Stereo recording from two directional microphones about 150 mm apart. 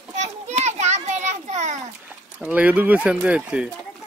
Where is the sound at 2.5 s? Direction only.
10° right (ahead or behind).